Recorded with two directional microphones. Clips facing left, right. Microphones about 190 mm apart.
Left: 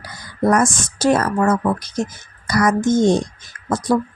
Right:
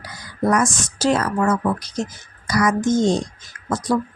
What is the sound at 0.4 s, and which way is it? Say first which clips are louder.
A woman's voice: left 3 dB; 50° left (ahead or behind).